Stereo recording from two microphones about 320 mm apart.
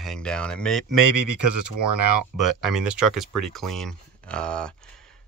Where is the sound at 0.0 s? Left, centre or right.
Centre.